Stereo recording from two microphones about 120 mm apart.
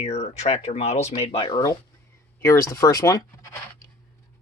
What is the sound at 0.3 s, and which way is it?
Speech, 65° left (ahead or behind).